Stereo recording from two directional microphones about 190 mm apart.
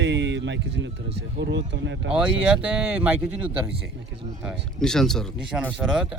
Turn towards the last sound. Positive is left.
turn(degrees=-5)  # may be behind; listen again after turning